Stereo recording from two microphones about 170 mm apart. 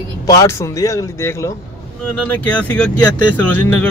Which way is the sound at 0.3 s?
20° left (ahead or behind).